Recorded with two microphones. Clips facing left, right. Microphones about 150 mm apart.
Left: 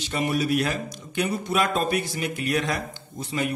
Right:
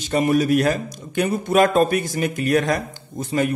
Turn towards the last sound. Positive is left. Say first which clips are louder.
# right 6 dB
turn(degrees=-45)  # may be behind; listen again after turning